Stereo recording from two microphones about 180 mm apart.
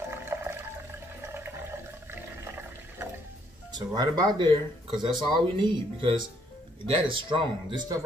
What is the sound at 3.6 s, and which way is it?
Speech, 20° right (ahead or behind).